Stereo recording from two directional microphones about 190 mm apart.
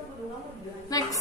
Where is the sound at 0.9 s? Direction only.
20° left (ahead or behind).